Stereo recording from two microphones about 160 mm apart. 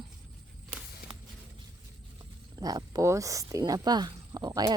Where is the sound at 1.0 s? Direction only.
70° left (ahead or behind).